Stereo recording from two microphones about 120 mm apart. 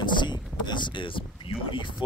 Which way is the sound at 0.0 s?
40° left (ahead or behind).